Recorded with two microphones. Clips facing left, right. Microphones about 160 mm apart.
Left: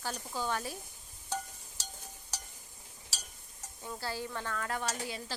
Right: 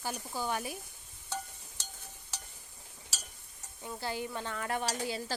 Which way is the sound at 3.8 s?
20° right (ahead or behind).